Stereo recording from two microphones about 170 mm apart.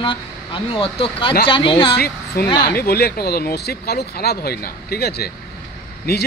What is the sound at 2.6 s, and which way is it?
Speech, 65° left (ahead or behind).